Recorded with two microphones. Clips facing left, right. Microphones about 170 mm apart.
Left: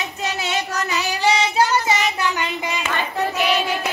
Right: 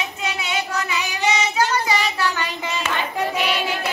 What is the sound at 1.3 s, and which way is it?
Child singing, 30° left (ahead or behind).